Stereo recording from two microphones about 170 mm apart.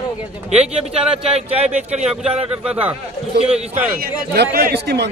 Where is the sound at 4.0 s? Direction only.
65° right (ahead or behind).